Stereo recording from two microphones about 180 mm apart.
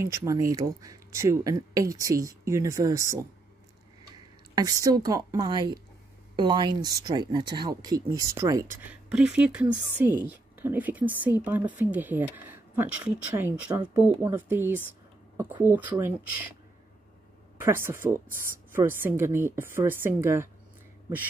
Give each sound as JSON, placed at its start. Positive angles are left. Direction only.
{"t": 0.0, "sound": "speech", "side_deg": -15}
{"t": 4.6, "sound": "a woman's voice", "side_deg": -20}
{"t": 17.6, "sound": "speech", "side_deg": -15}
{"t": 18.3, "sound": "speech", "side_deg": -50}
{"t": 18.7, "sound": "speech", "side_deg": -10}